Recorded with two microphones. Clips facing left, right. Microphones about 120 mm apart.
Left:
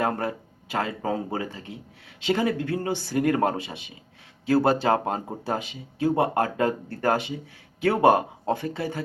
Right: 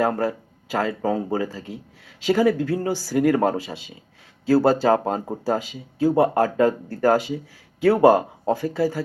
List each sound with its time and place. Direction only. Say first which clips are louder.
0.2 s speech: right 5 dB; 20° left (ahead or behind)